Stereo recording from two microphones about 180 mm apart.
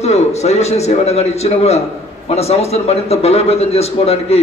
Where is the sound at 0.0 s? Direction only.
40° left (ahead or behind).